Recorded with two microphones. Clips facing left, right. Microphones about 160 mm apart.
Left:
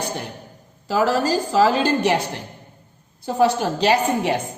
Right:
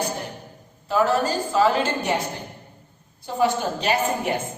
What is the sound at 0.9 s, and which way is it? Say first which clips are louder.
A woman's voice: left 2 dB; 85° left.